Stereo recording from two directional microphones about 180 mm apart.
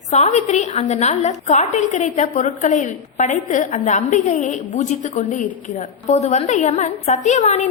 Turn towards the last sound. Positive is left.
turn(degrees=40)  # may be behind; listen again after turning